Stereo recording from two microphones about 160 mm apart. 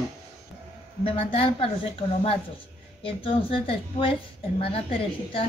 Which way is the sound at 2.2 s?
35° left (ahead or behind).